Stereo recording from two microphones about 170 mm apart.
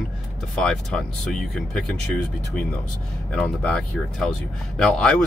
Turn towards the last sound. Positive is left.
turn(degrees=5)  # may be behind; listen again after turning